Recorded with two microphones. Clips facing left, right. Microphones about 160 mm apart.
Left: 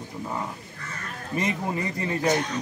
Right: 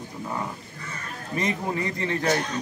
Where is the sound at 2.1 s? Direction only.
15° left (ahead or behind).